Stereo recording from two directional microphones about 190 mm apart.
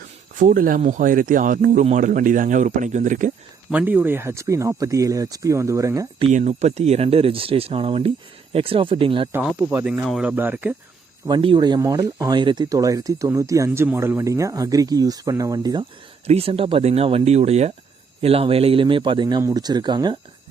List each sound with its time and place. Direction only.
0.3 s speech: 45° right (ahead or behind)
3.7 s speech: 10° right (ahead or behind)
6.1 s speech: 35° right (ahead or behind)
9.3 s speech: 5° right (ahead or behind)
11.3 s speech: 25° right (ahead or behind)